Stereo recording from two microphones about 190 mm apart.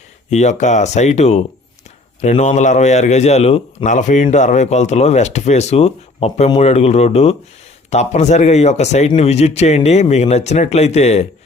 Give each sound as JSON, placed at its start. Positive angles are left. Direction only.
{"t": 0.3, "sound": "a man's voice", "side_deg": 35}